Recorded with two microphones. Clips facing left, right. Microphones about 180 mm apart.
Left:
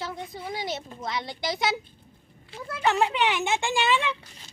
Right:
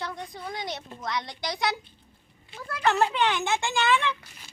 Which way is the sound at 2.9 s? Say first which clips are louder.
Even; 15° left (ahead or behind).